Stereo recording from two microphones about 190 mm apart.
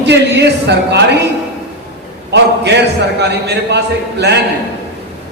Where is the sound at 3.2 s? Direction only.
60° right (ahead or behind).